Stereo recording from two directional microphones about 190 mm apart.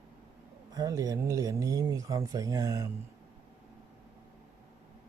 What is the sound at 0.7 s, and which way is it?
Speech, 20° right (ahead or behind).